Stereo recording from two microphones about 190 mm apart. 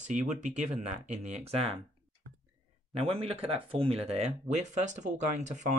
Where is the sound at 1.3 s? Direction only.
30° right (ahead or behind).